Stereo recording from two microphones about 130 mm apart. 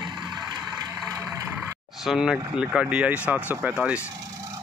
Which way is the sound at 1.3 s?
15° right (ahead or behind).